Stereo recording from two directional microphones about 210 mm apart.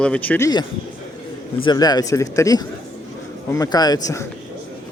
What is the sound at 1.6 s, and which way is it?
Speech, 20° left (ahead or behind).